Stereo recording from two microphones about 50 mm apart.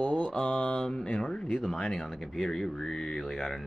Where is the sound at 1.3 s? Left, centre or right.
Centre.